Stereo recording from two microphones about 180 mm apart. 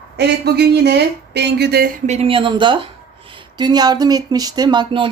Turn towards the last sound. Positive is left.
turn(degrees=-25)  # may be behind; listen again after turning